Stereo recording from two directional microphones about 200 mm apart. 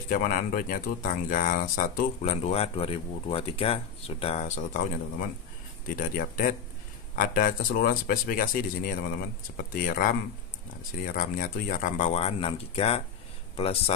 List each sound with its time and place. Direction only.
0.1 s speech: 45° left (ahead or behind)
5.9 s speech: 45° left (ahead or behind)